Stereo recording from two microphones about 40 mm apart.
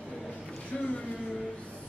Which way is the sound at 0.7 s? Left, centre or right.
Centre.